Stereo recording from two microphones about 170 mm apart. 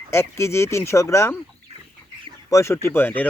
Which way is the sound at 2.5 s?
15° left (ahead or behind).